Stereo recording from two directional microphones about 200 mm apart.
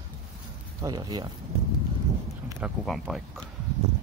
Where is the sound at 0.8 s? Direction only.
20° right (ahead or behind).